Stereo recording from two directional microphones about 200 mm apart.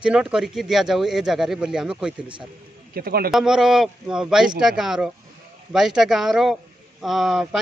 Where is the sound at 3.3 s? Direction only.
Centre (ahead or behind).